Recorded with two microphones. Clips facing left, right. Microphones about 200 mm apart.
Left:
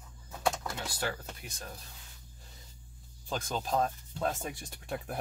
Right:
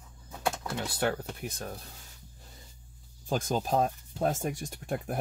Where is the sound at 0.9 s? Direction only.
55° right (ahead or behind).